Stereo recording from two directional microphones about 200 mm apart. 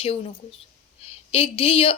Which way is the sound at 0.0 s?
30° left (ahead or behind).